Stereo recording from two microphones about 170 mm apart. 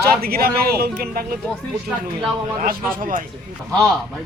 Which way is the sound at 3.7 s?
5° left (ahead or behind).